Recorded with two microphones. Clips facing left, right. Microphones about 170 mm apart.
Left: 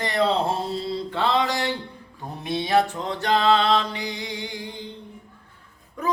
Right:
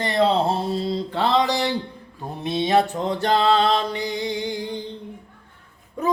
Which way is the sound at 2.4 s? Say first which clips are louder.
Right 2 dB; 20° right (ahead or behind).